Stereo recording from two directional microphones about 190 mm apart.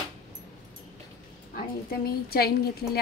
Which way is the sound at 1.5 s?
55° left (ahead or behind).